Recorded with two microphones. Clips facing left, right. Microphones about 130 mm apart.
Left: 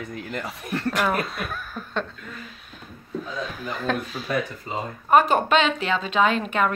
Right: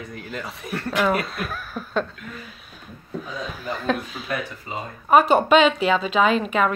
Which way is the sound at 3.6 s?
Centre (ahead or behind).